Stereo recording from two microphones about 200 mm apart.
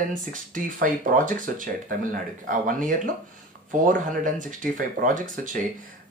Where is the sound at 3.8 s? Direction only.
40° right (ahead or behind).